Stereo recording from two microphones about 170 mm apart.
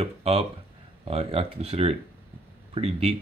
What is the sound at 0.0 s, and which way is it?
Speech, 35° right (ahead or behind).